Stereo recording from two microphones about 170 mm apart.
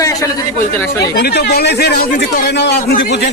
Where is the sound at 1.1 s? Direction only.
75° left (ahead or behind).